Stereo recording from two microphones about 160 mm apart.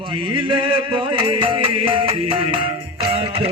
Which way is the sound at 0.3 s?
30° right (ahead or behind).